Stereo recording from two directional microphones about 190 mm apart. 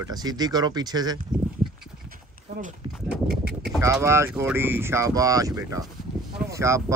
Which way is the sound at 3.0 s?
55° right (ahead or behind).